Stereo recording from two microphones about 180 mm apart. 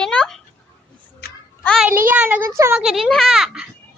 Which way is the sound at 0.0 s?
5° left (ahead or behind).